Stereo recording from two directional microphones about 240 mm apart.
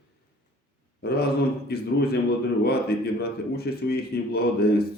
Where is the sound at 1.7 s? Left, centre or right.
Left.